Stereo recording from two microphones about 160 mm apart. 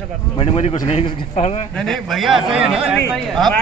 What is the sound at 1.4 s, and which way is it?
Speech, 45° left (ahead or behind).